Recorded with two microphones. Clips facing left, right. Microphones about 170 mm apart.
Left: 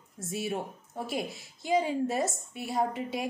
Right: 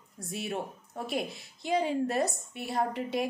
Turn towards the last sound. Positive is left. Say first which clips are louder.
# even
turn(degrees=0)  # may be behind; listen again after turning